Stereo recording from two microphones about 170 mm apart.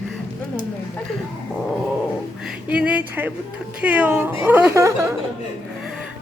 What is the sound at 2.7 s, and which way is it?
Speech, 10° right (ahead or behind).